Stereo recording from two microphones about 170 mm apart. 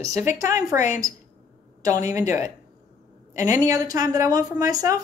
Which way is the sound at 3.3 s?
20° right (ahead or behind).